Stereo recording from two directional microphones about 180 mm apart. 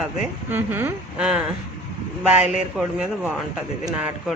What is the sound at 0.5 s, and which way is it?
Speech, 10° right (ahead or behind).